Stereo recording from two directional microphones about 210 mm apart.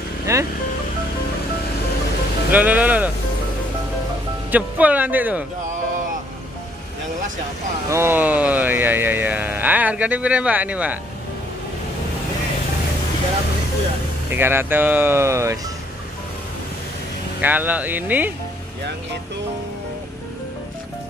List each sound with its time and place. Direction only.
0.3 s speech: 15° right (ahead or behind)
2.5 s speech: 5° right (ahead or behind)
4.5 s speech: 5° right (ahead or behind)
7.9 s speech: 10° right (ahead or behind)
14.3 s speech: 10° right (ahead or behind)
17.4 s speech: 10° right (ahead or behind)